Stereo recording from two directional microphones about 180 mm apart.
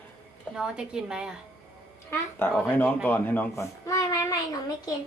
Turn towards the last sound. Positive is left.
turn(degrees=20)  # may be behind; listen again after turning